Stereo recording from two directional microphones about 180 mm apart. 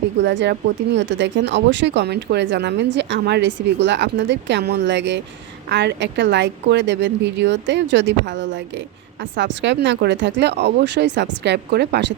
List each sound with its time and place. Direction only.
0.2 s speech: 75° right (ahead or behind)
0.9 s a woman's voice: 85° right; by 12.1 s 70° right (ahead or behind)